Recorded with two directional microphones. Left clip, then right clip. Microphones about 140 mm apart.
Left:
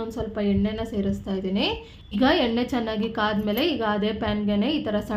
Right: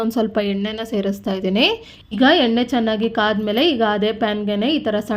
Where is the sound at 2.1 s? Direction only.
40° right (ahead or behind).